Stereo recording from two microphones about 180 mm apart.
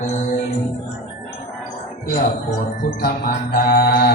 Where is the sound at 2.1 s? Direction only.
45° left (ahead or behind).